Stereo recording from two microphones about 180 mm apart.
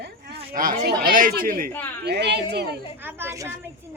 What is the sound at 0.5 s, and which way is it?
Speech, 50° right (ahead or behind).